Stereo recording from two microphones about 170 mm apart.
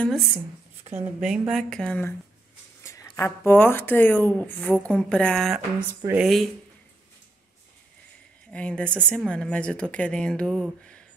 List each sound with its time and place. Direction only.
0.9 s speech: 5° right (ahead or behind)
5.8 s speech: 10° right (ahead or behind)
8.5 s speech: 5° left (ahead or behind)